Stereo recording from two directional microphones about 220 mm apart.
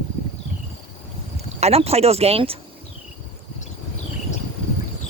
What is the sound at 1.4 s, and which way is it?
Speech, 30° right (ahead or behind).